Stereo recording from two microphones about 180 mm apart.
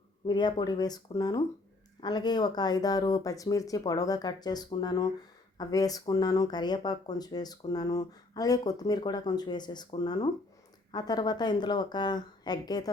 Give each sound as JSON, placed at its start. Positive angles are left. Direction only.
{"t": 0.3, "sound": "speech", "side_deg": 25}